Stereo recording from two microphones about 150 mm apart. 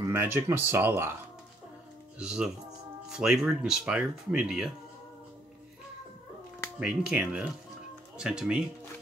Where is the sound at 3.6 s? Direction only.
5° right (ahead or behind).